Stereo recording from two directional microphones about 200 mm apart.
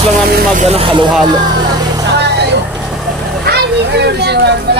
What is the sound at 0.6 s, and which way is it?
Speech, 30° right (ahead or behind).